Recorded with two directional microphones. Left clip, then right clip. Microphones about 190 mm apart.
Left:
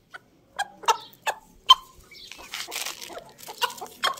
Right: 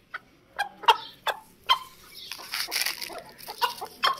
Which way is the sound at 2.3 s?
5° left (ahead or behind).